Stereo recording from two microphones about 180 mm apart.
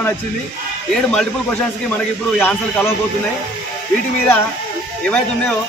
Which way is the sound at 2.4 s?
10° left (ahead or behind).